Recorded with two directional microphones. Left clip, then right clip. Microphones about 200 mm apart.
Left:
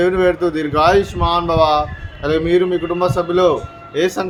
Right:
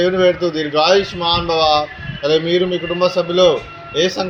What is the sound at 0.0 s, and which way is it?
A man's voice, 20° left (ahead or behind).